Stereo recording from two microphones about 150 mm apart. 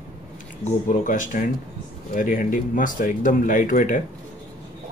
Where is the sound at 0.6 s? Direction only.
60° left (ahead or behind).